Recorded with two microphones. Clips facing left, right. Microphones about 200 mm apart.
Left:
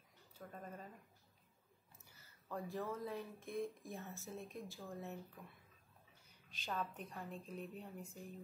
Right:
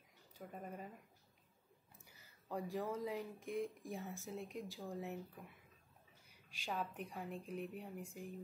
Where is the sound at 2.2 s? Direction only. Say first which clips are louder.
Right 2 dB; 15° right (ahead or behind).